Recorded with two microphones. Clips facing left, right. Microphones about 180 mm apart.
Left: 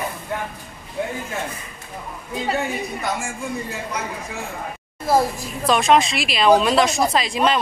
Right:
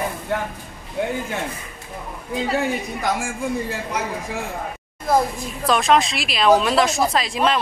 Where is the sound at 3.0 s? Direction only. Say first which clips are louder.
Right 2 dB; 90° right.